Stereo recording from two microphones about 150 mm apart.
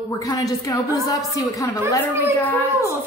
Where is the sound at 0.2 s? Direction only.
25° left (ahead or behind).